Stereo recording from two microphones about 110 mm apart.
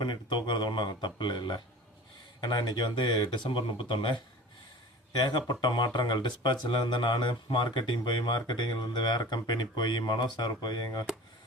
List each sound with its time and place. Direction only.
0.0 s speech: 45° left (ahead or behind)